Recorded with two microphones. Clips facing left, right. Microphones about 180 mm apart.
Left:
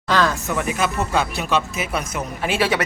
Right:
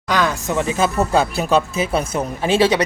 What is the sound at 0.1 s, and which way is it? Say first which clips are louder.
Speech: right 1 dB; 15° right (ahead or behind).